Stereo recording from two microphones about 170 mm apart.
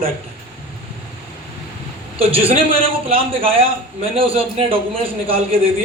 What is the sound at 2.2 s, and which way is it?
A man's voice, 35° right (ahead or behind).